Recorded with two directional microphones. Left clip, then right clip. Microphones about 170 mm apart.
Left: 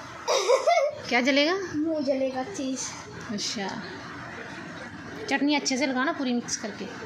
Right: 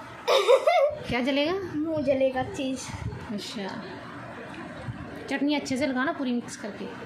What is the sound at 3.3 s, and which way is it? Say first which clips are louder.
Speech: left 4 dB; centre (ahead or behind).